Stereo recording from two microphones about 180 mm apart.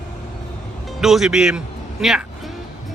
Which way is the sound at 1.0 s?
Centre (ahead or behind).